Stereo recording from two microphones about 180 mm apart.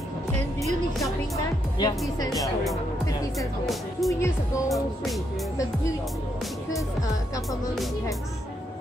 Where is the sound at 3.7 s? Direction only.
Centre (ahead or behind).